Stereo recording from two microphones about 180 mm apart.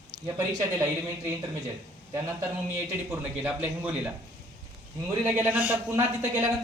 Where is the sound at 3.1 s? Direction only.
10° right (ahead or behind).